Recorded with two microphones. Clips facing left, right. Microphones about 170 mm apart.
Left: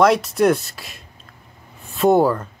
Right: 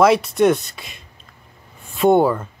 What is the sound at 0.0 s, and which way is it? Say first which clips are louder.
Speech: right 1 dB; centre (ahead or behind).